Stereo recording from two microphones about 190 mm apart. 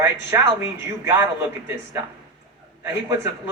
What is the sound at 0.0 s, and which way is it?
A man's voice, 15° right (ahead or behind).